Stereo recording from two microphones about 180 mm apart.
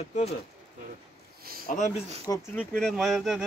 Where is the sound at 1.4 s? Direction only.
55° right (ahead or behind).